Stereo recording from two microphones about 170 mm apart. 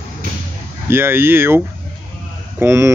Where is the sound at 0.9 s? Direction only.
15° right (ahead or behind).